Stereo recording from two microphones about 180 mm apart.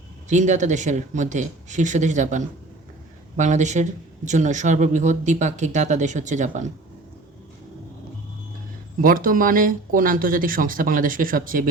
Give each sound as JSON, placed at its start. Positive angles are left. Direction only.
{"t": 0.3, "sound": "speech", "side_deg": -40}
{"t": 9.0, "sound": "speech", "side_deg": -50}